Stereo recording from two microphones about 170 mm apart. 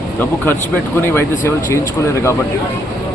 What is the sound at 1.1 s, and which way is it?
Speech, 15° left (ahead or behind).